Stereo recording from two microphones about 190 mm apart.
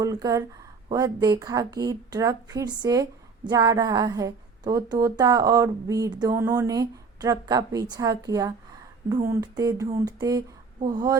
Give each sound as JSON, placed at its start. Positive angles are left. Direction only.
{"t": 0.0, "sound": "a woman's voice", "side_deg": -20}